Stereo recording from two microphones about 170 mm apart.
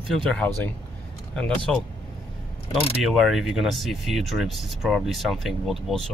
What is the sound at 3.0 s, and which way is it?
Speech, centre (ahead or behind).